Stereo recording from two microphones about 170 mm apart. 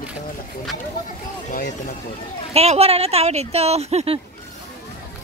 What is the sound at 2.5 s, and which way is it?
Speech, 35° right (ahead or behind).